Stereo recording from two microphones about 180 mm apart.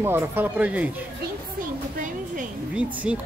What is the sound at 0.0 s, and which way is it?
Speech, 10° right (ahead or behind).